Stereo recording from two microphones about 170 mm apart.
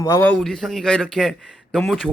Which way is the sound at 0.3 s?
5° left (ahead or behind).